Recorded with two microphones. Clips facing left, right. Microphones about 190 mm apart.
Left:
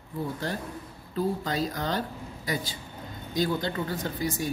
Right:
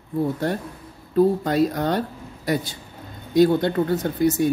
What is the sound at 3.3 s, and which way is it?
Speech, 65° right (ahead or behind).